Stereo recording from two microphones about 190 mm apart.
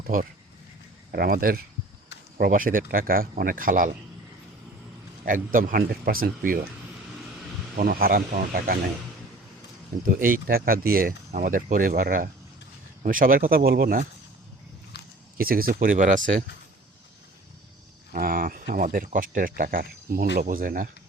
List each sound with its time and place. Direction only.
1.1 s speech: 50° right (ahead or behind)
5.2 s speech: 45° right (ahead or behind)
7.8 s speech: 50° right (ahead or behind)
10.2 s speech: 45° right (ahead or behind)
15.4 s speech: 50° right (ahead or behind)
18.1 s speech: 50° right (ahead or behind)